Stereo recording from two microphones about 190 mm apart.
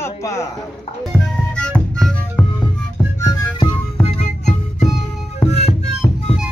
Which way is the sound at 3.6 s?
5° left (ahead or behind).